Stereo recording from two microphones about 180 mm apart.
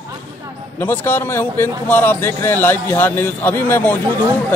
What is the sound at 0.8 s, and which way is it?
Speech, 10° left (ahead or behind).